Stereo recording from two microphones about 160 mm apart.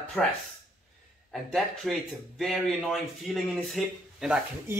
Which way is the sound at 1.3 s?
Centre (ahead or behind).